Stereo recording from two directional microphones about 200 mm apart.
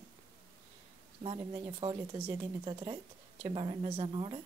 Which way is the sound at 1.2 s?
25° right (ahead or behind).